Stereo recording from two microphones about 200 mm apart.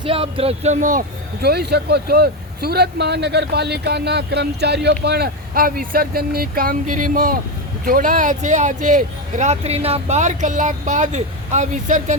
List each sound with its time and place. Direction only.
0.0 s speech: 30° right (ahead or behind)